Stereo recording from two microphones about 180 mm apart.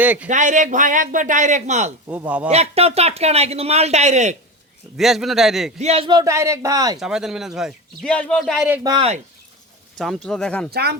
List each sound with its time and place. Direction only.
0.0 s a man's voice: 10° right (ahead or behind)
0.3 s a man's voice: 45° right (ahead or behind)
2.0 s a man's voice: 10° right (ahead or behind)
2.5 s a man's voice: 35° right (ahead or behind)
4.9 s a man's voice: centre (ahead or behind)
5.8 s speech: 35° right (ahead or behind)
7.0 s a man's voice: 5° right (ahead or behind)
8.8 s speech: 25° right (ahead or behind)
10.2 s a man's voice: 5° left (ahead or behind)
10.7 s speech: 60° right (ahead or behind)